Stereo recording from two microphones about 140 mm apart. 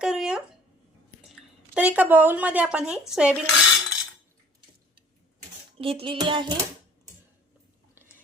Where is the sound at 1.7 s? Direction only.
10° right (ahead or behind).